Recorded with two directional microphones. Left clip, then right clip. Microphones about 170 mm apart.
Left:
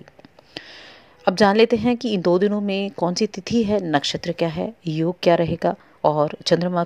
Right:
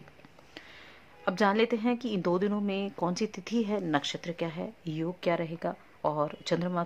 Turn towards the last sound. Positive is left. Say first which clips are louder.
# left 11 dB
turn(degrees=30)  # may be behind; listen again after turning